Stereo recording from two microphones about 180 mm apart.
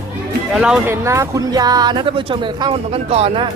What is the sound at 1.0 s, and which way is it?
Speech, 15° right (ahead or behind).